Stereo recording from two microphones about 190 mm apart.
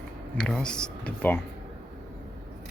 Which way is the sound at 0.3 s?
5° left (ahead or behind).